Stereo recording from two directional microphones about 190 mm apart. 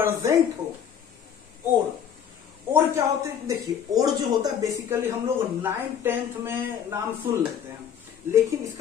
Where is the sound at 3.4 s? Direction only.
20° right (ahead or behind).